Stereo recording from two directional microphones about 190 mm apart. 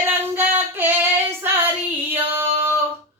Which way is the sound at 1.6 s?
10° right (ahead or behind).